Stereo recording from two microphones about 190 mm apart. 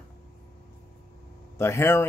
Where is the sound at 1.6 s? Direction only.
15° left (ahead or behind).